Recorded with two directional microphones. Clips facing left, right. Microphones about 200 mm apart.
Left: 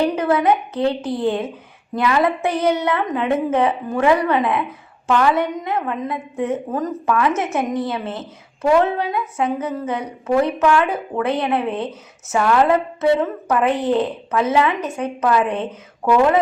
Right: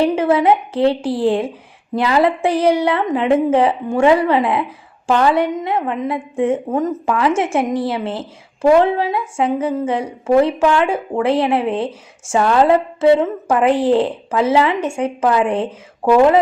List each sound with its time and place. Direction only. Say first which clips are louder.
0.0 s a woman's voice: right 3 dB; 25° right (ahead or behind)